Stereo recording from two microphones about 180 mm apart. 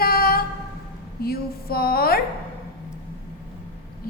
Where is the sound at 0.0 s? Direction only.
55° left (ahead or behind).